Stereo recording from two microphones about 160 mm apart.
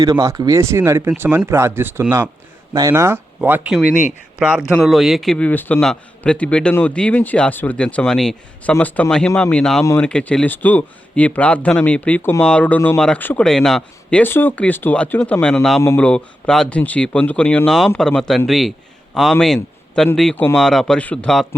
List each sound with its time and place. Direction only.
0.0 s speech: 20° right (ahead or behind); by 15.8 s 5° left (ahead or behind)
15.8 s speech: 15° left (ahead or behind)
16.0 s speech: 5° left (ahead or behind)